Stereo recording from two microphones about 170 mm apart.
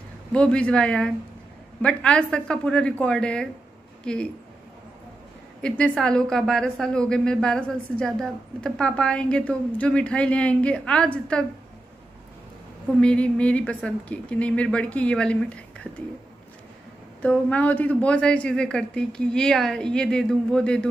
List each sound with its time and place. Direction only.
0.3 s a woman's voice: 5° left (ahead or behind)
5.6 s a woman's voice: 5° left (ahead or behind)
13.0 s speech: 5° left (ahead or behind)
17.2 s a woman's voice: 10° left (ahead or behind)